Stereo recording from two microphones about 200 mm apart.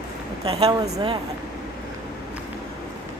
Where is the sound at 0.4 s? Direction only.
20° right (ahead or behind).